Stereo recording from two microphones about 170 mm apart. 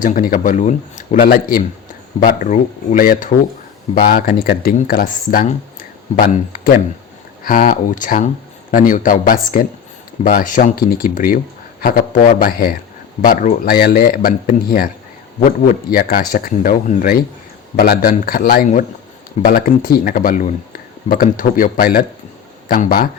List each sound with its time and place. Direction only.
0.0 s speech: 55° left (ahead or behind)